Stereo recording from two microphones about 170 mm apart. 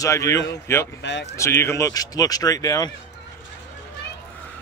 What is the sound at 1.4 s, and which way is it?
Speech, 15° left (ahead or behind).